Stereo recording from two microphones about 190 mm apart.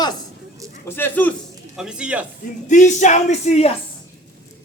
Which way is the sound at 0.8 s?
10° left (ahead or behind).